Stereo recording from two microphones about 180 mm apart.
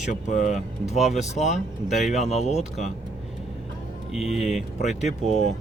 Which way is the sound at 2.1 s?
40° left (ahead or behind).